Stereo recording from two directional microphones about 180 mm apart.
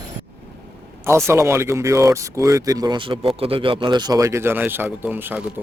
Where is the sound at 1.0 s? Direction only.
15° right (ahead or behind).